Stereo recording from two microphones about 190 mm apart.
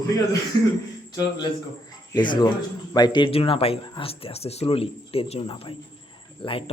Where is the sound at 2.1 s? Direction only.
25° left (ahead or behind).